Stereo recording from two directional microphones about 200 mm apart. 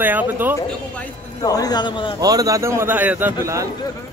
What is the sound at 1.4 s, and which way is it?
Speech, 20° left (ahead or behind).